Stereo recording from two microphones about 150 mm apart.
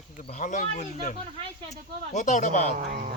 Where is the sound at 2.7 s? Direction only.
65° right (ahead or behind).